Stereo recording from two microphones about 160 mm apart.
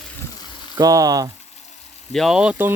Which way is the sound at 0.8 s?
20° right (ahead or behind).